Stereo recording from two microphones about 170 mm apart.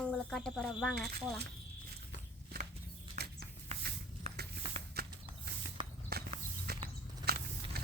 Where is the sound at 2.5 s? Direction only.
60° right (ahead or behind).